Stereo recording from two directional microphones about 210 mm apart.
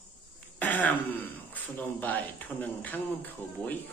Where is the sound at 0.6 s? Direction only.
10° left (ahead or behind).